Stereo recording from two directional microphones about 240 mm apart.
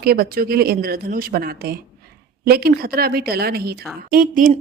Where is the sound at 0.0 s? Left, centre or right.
Right.